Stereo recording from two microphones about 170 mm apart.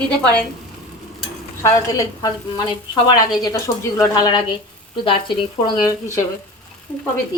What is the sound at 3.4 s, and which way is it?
A woman's voice, 20° left (ahead or behind).